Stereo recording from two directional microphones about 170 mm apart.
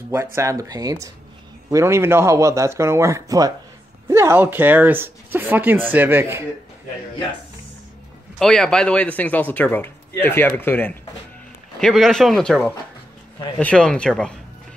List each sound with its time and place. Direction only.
0.1 s speech: 15° right (ahead or behind)
8.4 s speech: 5° left (ahead or behind)
11.8 s speech: centre (ahead or behind)